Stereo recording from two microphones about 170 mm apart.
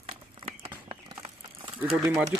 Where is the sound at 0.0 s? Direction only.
35° right (ahead or behind).